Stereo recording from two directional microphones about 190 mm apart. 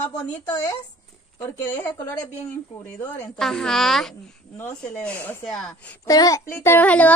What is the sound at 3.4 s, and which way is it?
A woman's voice, centre (ahead or behind).